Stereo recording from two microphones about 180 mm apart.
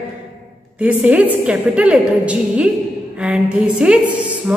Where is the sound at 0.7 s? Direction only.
5° right (ahead or behind).